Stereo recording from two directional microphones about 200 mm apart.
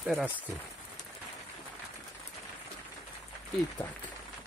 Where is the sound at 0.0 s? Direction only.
5° right (ahead or behind).